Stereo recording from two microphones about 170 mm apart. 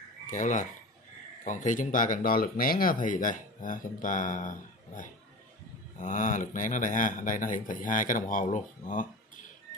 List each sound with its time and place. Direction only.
0.3 s speech: 45° left (ahead or behind)